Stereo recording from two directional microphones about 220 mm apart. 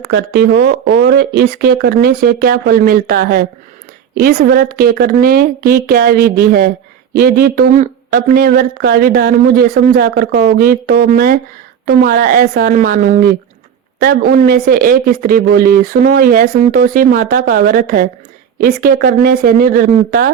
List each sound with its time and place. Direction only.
0.1 s speech: 50° right (ahead or behind)